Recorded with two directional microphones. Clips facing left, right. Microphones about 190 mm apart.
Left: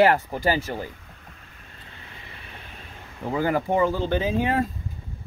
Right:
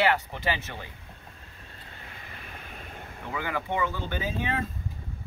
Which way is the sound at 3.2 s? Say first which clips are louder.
Left 9 dB; 40° left (ahead or behind).